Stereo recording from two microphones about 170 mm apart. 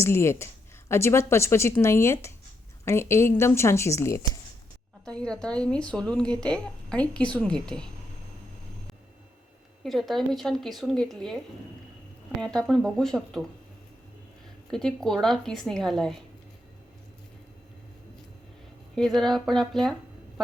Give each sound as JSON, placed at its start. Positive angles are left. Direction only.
{"t": 0.0, "sound": "a woman's voice", "side_deg": 15}
{"t": 5.0, "sound": "speech", "side_deg": 5}
{"t": 9.8, "sound": "speech", "side_deg": 0}
{"t": 12.5, "sound": "speech", "side_deg": 5}
{"t": 14.7, "sound": "speech", "side_deg": 5}
{"t": 18.9, "sound": "speech", "side_deg": 0}